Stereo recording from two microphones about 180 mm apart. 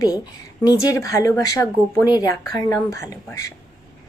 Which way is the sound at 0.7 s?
20° left (ahead or behind).